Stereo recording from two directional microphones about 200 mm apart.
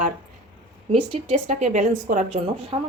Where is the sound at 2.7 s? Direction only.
25° right (ahead or behind).